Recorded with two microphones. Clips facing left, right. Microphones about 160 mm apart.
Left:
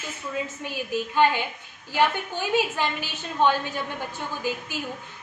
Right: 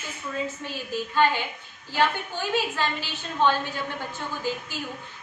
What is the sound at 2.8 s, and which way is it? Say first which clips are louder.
Speech: left 1 dB; 15° left (ahead or behind).